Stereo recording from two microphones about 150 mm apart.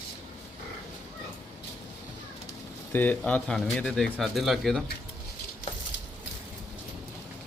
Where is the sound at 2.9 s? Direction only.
10° left (ahead or behind).